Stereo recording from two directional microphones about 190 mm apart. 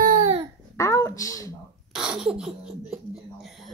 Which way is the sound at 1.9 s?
5° right (ahead or behind).